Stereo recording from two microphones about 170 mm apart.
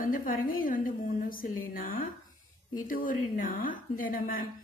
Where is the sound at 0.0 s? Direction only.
55° left (ahead or behind).